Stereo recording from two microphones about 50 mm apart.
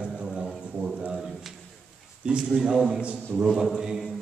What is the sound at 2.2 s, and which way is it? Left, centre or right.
Speech, centre.